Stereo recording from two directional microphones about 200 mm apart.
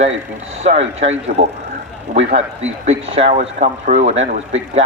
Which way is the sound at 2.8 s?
35° right (ahead or behind).